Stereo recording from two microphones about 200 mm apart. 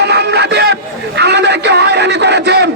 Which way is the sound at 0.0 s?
55° right (ahead or behind).